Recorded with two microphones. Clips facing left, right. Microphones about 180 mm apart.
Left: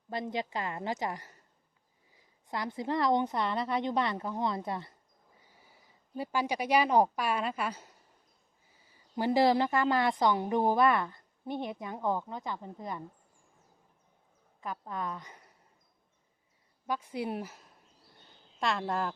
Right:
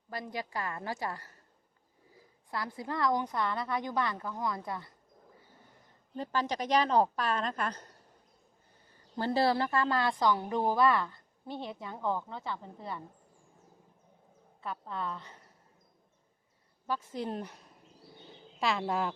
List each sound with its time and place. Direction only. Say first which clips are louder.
0.1 s a woman's voice: left 4 dB; 20° left (ahead or behind)
2.5 s a woman's voice: left 4 dB; 20° left (ahead or behind)
5.5 s a woman's voice: right 2 dB; 5° left (ahead or behind)
14.6 s a woman's voice: left 1 dB; 15° left (ahead or behind)
16.8 s a sound: left 1 dB; 15° left (ahead or behind)
18.6 s a woman's voice: right 1 dB; centre (ahead or behind)